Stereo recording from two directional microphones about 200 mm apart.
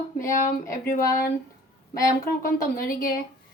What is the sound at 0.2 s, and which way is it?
A woman's voice, 40° left (ahead or behind).